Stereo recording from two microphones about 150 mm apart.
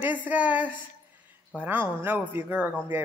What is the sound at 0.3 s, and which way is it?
A woman's voice, 10° right (ahead or behind).